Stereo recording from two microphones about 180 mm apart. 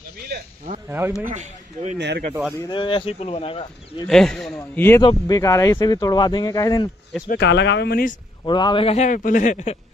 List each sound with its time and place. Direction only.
0.8 s a man's voice: 10° right (ahead or behind)
1.2 s a man's voice: 40° right (ahead or behind)
2.0 s speech: 70° right (ahead or behind)
2.5 s a man's voice: 25° left (ahead or behind)
4.1 s speech: centre (ahead or behind)
4.6 s speech: 15° left (ahead or behind)
7.2 s speech: 70° left (ahead or behind)
8.5 s a man's voice: 25° left (ahead or behind); by 9.8 s 40° left (ahead or behind)